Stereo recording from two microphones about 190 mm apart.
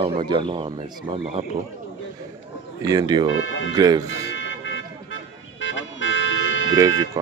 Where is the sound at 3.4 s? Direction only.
90° left.